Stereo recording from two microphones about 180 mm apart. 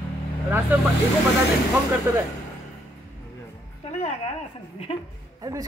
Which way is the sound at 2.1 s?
15° right (ahead or behind).